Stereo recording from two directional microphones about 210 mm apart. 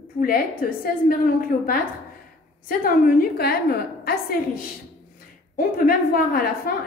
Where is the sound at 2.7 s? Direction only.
45° left (ahead or behind).